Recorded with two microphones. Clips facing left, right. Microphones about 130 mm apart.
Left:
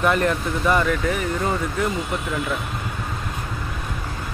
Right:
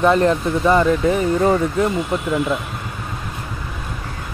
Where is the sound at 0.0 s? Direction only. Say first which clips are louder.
Right 5 dB; 30° right (ahead or behind).